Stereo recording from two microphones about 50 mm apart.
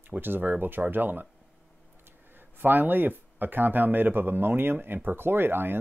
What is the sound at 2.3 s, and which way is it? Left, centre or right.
Speech, right.